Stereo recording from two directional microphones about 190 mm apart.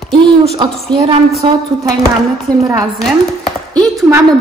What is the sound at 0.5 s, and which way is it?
Speech, 25° right (ahead or behind).